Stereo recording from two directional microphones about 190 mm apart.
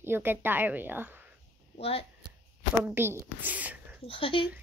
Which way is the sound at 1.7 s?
30° left (ahead or behind).